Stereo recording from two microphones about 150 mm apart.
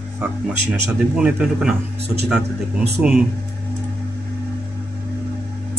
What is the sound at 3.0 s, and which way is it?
Speech, 5° right (ahead or behind).